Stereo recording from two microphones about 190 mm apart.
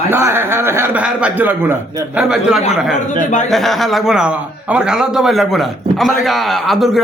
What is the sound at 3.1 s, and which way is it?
Speech, 40° left (ahead or behind).